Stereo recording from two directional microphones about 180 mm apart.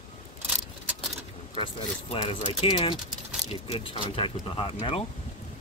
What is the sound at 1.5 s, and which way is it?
Speech, 30° left (ahead or behind).